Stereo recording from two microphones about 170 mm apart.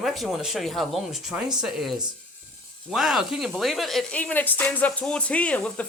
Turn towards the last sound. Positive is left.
turn(degrees=5)  # may be behind; listen again after turning